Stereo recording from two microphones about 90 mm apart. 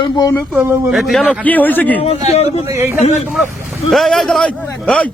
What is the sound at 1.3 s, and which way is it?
Speech, 20° left (ahead or behind).